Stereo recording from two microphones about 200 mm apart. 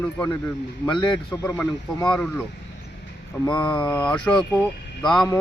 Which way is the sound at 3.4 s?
5° left (ahead or behind).